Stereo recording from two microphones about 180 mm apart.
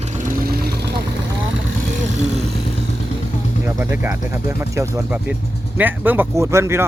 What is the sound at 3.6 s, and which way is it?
Speech, 15° right (ahead or behind).